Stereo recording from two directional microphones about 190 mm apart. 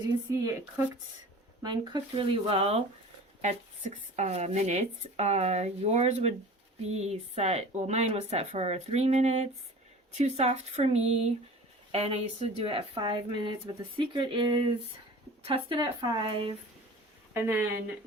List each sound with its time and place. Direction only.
0.3 s speech: 15° right (ahead or behind)
17.4 s speech: 10° right (ahead or behind)